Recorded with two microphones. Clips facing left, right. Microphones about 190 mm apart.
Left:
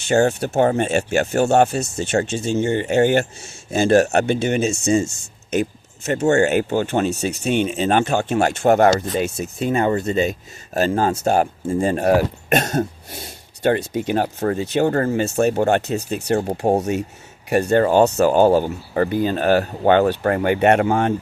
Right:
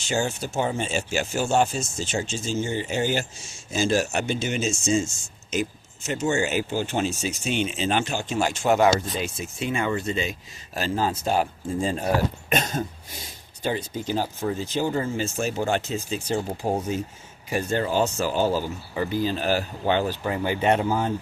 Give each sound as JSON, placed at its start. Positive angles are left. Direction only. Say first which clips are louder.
{"t": 0.0, "sound": "speech", "louder": "left 9 dB", "side_deg": 60}
{"t": 11.7, "sound": "speech", "louder": "left 8 dB", "side_deg": 65}